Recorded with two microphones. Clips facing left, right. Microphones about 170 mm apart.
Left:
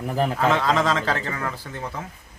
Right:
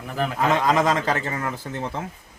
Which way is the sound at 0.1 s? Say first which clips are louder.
Left 3 dB; 35° left (ahead or behind).